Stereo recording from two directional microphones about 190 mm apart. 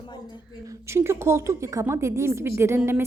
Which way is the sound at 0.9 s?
15° right (ahead or behind).